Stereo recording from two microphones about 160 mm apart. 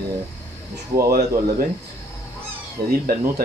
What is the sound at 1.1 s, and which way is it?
Speech, 70° right (ahead or behind).